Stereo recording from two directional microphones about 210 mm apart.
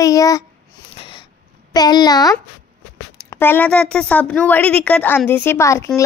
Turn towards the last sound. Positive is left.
turn(degrees=15)  # may be behind; listen again after turning